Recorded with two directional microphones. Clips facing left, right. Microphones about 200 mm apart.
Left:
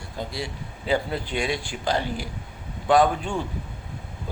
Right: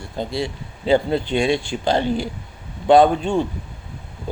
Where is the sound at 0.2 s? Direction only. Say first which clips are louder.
Right 7 dB; 25° right (ahead or behind).